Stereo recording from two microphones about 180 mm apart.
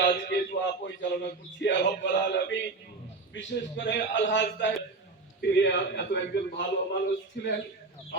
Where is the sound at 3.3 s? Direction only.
90° left.